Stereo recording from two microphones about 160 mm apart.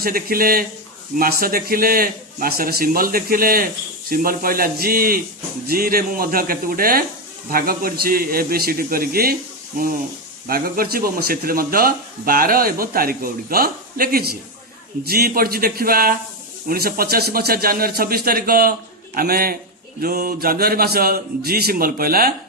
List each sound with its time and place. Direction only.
0.0 s a man's voice: 65° right (ahead or behind)